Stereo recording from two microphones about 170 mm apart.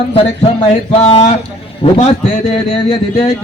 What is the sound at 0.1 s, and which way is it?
A man's voice, 35° left (ahead or behind).